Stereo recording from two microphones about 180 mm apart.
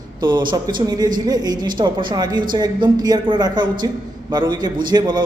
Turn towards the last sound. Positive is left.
turn(degrees=-25)  # may be behind; listen again after turning